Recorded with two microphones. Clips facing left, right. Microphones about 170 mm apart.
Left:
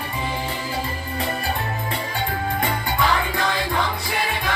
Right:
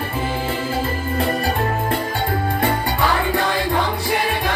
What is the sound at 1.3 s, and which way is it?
Music, 50° right (ahead or behind).